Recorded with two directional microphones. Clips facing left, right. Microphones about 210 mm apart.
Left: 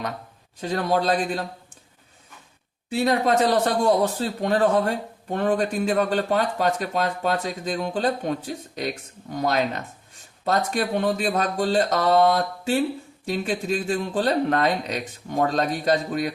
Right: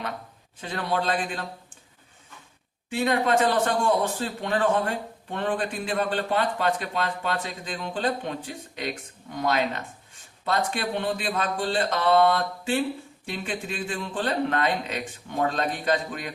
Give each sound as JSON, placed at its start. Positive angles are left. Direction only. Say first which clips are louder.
{"t": 0.6, "sound": "a man's voice", "louder": "left 5 dB", "side_deg": 40}
{"t": 2.9, "sound": "a man's voice", "louder": "left 2 dB", "side_deg": 40}